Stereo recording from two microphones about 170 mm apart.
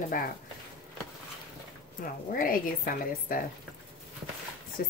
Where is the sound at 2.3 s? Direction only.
55° left (ahead or behind).